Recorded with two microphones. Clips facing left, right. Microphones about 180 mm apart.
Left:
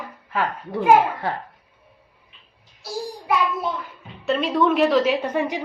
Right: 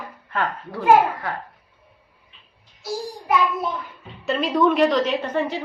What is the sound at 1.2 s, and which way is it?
Speech, 30° left (ahead or behind).